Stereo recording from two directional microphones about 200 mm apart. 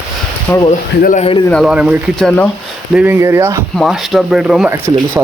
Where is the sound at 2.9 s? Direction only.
10° right (ahead or behind).